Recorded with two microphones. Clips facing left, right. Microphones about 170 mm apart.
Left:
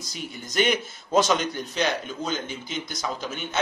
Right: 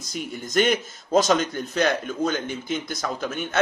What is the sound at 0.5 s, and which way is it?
A man's voice, 45° right (ahead or behind).